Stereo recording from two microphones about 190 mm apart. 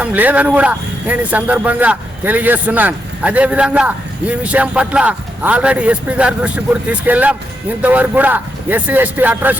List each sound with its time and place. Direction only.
0.0 s speech: 10° right (ahead or behind)